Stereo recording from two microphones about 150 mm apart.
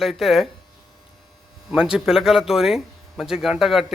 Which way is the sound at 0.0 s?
Centre (ahead or behind).